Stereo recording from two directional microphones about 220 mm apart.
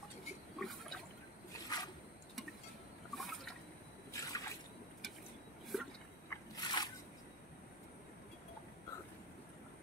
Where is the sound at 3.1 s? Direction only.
Centre (ahead or behind).